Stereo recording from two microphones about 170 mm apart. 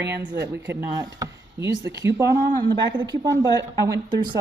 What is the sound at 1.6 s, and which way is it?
Speech, 90° right.